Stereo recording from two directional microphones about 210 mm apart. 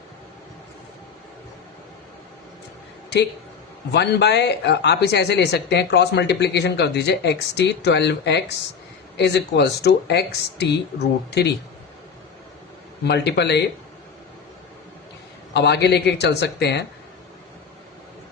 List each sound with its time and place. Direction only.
3.9 s speech: 55° left (ahead or behind)
13.1 s speech: 50° left (ahead or behind)
15.5 s speech: 55° left (ahead or behind)